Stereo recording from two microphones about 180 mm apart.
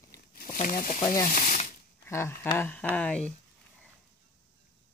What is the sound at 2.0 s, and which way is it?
Speech, 15° left (ahead or behind).